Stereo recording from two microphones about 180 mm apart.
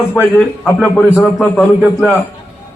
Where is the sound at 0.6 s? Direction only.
10° left (ahead or behind).